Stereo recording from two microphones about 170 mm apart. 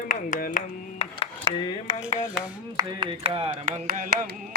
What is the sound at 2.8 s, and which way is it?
Speech, 30° right (ahead or behind).